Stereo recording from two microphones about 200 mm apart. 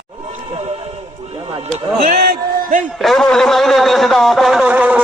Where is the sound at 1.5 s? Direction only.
25° right (ahead or behind).